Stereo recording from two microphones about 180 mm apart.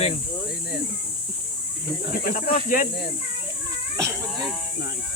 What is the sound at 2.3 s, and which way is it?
Speech, 50° left (ahead or behind).